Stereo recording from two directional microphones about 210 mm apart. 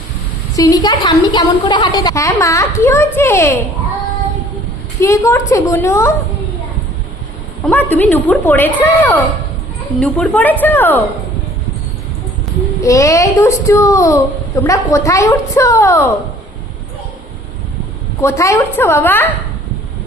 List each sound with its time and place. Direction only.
0.5 s a woman's voice: 15° left (ahead or behind)
4.9 s a woman's voice: 15° left (ahead or behind)
7.7 s a woman's voice: 10° left (ahead or behind)
12.8 s a woman's voice: 15° left (ahead or behind)
18.2 s a woman's voice: 15° left (ahead or behind)